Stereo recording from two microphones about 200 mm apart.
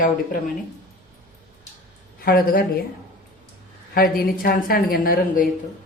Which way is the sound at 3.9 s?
45° left (ahead or behind).